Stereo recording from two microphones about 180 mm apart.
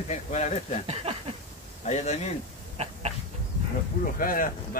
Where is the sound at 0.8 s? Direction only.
35° right (ahead or behind).